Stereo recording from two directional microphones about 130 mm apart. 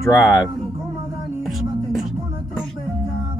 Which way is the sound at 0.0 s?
25° left (ahead or behind).